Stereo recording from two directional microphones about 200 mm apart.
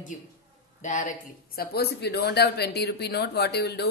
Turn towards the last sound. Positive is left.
turn(degrees=55)  # may be behind; listen again after turning